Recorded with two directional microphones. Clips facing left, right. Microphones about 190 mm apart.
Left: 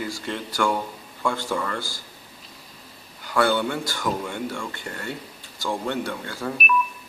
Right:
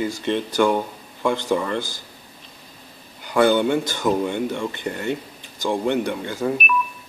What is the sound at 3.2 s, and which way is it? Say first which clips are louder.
Speech: right 5 dB; 20° right (ahead or behind).